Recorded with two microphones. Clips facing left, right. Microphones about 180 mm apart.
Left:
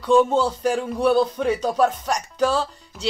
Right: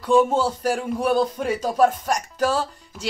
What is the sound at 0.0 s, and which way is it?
Speech, 10° right (ahead or behind).